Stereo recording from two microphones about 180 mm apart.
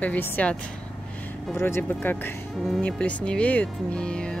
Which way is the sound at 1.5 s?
15° left (ahead or behind).